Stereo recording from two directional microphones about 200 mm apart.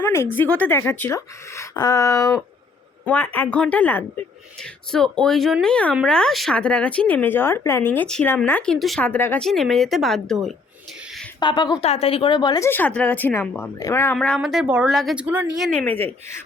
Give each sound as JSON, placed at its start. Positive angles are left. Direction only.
{"t": 0.0, "sound": "a sound", "side_deg": 15}
{"t": 0.6, "sound": "speech", "side_deg": 10}
{"t": 11.3, "sound": "a woman's voice", "side_deg": 20}